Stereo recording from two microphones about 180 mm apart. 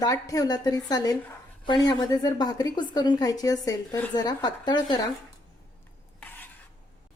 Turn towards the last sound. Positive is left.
turn(degrees=10)  # may be behind; listen again after turning